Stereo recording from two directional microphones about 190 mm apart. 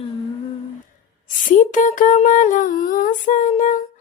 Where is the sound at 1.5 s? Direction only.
40° left (ahead or behind).